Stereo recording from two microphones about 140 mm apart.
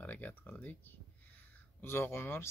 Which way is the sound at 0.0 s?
10° left (ahead or behind).